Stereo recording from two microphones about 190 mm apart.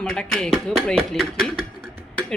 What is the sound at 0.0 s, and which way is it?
Speech, 5° left (ahead or behind).